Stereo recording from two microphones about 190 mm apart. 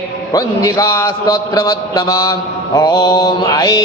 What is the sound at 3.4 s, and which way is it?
Mantra, 15° left (ahead or behind).